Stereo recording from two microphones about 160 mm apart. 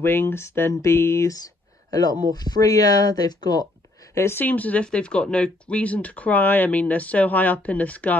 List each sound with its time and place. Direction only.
0.0 s speech: 15° left (ahead or behind)